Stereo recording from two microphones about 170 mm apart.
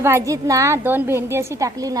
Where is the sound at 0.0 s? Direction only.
15° right (ahead or behind).